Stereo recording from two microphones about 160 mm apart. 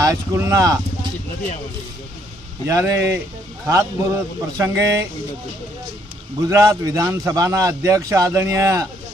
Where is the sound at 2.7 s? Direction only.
20° right (ahead or behind).